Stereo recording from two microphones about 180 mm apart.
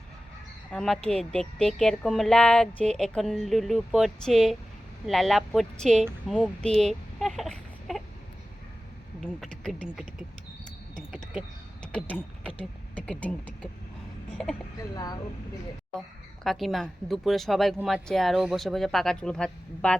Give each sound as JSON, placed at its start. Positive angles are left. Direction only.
{"t": 0.7, "sound": "a woman's voice", "side_deg": 0}
{"t": 6.2, "sound": "a sound", "side_deg": 5}
{"t": 9.2, "sound": "a woman's voice", "side_deg": 5}
{"t": 10.9, "sound": "a sound", "side_deg": 5}
{"t": 13.0, "sound": "speech", "side_deg": 10}
{"t": 14.8, "sound": "speech", "side_deg": 20}
{"t": 16.0, "sound": "a woman's voice", "side_deg": 0}